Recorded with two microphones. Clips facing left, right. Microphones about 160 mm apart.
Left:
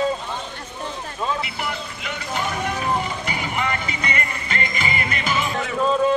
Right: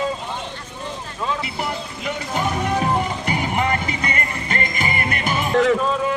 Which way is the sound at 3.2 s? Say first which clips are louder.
Right 4 dB; 45° right (ahead or behind).